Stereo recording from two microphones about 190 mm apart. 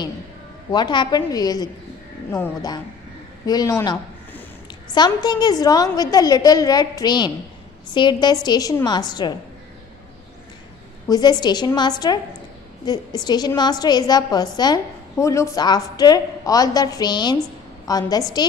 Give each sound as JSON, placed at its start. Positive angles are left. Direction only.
{"t": 0.7, "sound": "a woman's voice", "side_deg": 20}
{"t": 11.1, "sound": "a woman's voice", "side_deg": 20}